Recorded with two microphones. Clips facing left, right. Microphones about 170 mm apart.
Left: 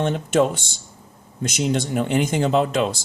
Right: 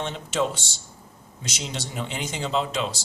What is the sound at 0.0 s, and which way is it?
Speech, 55° left (ahead or behind).